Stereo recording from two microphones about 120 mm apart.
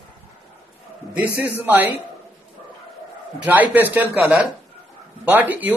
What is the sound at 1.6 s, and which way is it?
Speech, 15° right (ahead or behind).